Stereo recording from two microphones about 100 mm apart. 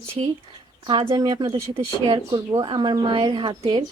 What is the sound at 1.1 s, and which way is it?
Speech, 45° right (ahead or behind).